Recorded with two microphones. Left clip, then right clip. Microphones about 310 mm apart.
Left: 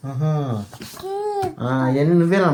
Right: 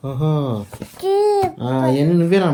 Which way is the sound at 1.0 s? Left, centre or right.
Right.